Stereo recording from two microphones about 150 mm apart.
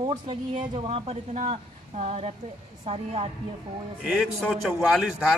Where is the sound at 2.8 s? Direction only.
40° right (ahead or behind).